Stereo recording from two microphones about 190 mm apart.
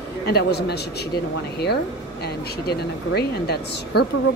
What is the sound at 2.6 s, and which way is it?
Speech, 60° left (ahead or behind).